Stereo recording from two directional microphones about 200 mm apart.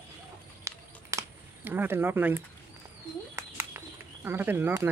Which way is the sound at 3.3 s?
15° right (ahead or behind).